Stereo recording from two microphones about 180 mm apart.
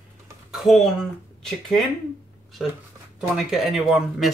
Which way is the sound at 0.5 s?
Centre (ahead or behind).